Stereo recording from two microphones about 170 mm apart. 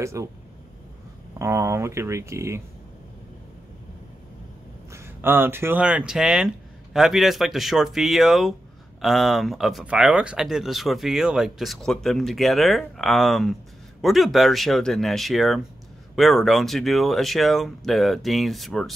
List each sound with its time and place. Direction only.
0.0 s speech: 15° right (ahead or behind)
1.4 s speech: 15° right (ahead or behind)
4.9 s speech: 15° right (ahead or behind); by 18.9 s centre (ahead or behind)